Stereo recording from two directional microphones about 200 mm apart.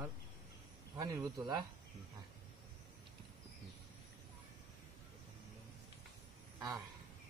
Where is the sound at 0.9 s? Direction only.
20° right (ahead or behind).